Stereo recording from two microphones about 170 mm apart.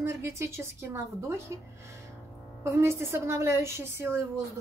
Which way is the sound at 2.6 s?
15° right (ahead or behind).